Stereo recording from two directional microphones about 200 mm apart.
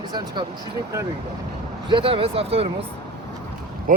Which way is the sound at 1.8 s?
25° right (ahead or behind).